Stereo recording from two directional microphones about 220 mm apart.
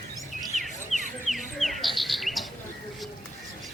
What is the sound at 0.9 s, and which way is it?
Bird, 30° left (ahead or behind).